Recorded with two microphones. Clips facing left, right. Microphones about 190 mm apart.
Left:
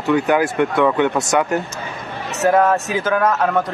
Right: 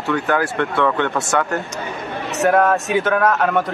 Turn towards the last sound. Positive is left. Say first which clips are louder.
# even
turn(degrees=0)  # may be behind; listen again after turning